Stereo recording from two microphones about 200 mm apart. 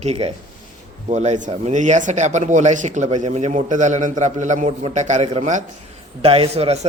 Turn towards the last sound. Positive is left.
turn(degrees=-30)  # may be behind; listen again after turning